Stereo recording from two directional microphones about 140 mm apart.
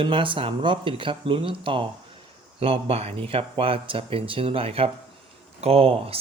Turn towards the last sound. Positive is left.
turn(degrees=-45)  # may be behind; listen again after turning